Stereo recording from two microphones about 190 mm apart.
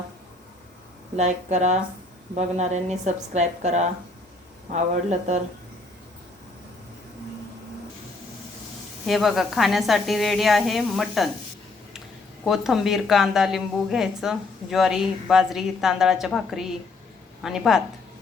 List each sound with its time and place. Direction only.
1.1 s a woman's voice: 35° right (ahead or behind)
9.0 s a woman's voice: centre (ahead or behind)
12.5 s a woman's voice: centre (ahead or behind)